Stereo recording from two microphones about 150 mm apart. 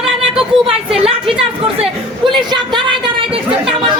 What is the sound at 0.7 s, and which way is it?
Speech, 40° right (ahead or behind).